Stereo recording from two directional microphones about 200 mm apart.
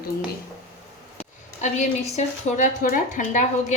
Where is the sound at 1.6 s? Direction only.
35° left (ahead or behind).